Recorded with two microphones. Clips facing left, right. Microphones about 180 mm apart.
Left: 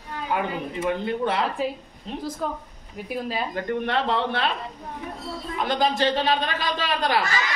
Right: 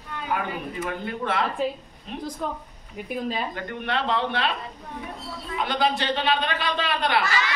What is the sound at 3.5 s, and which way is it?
Speech, 45° left (ahead or behind).